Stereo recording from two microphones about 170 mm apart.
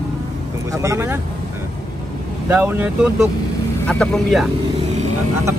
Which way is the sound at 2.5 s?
10° right (ahead or behind).